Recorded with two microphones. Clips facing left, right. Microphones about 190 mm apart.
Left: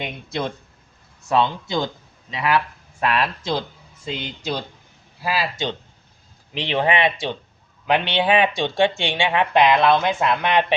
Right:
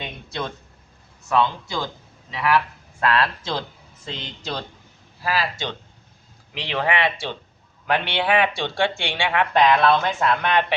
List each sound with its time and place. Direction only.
0.0 s speech: 25° left (ahead or behind)